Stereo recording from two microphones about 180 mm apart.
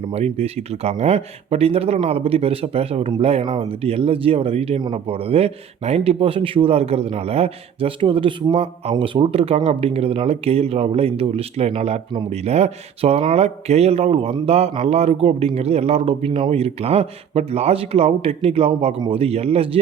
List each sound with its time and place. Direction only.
0.1 s speech: 35° right (ahead or behind)